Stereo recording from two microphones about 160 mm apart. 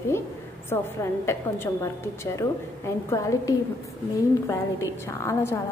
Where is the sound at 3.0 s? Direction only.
20° left (ahead or behind).